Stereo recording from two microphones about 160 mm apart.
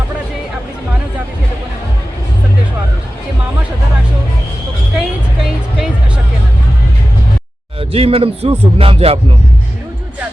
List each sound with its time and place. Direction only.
7.8 s speech: 35° right (ahead or behind)